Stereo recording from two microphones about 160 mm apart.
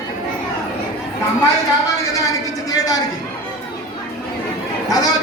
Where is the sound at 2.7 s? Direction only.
25° left (ahead or behind).